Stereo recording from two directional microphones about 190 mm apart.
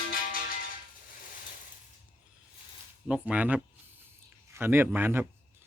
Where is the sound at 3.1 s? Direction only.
5° right (ahead or behind).